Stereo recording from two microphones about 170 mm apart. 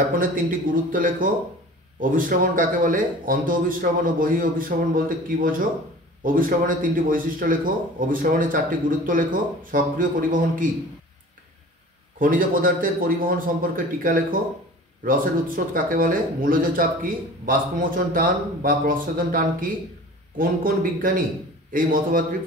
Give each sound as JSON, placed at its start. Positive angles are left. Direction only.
{"t": 0.2, "sound": "speech", "side_deg": -55}
{"t": 12.2, "sound": "speech", "side_deg": -55}